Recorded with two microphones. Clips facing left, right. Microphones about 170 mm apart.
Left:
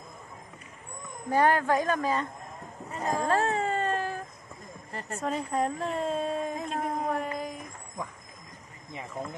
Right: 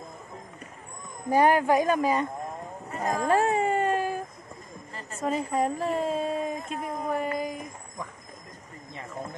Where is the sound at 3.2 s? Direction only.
15° right (ahead or behind).